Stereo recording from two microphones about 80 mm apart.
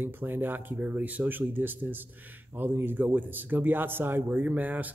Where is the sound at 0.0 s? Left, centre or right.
Right.